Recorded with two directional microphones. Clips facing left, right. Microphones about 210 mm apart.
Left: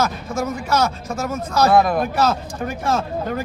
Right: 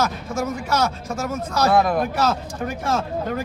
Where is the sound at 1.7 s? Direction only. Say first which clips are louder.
Left 2 dB; 5° left (ahead or behind).